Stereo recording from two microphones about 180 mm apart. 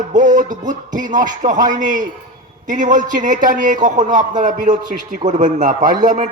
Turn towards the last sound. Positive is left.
turn(degrees=-45)  # may be behind; listen again after turning